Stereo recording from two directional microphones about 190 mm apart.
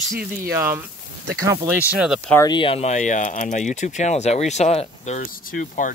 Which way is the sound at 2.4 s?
25° left (ahead or behind).